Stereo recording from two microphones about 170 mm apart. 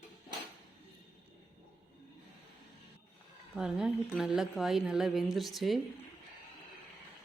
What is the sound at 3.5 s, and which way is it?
A woman's voice, 5° right (ahead or behind).